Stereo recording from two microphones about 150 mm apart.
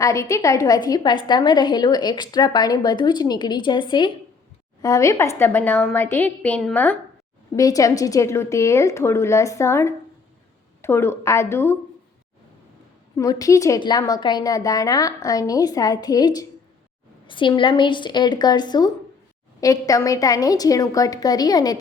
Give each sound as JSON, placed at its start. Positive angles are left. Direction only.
{"t": 0.0, "sound": "a woman's voice", "side_deg": 20}
{"t": 7.5, "sound": "a woman's voice", "side_deg": 25}
{"t": 13.1, "sound": "a woman's voice", "side_deg": 20}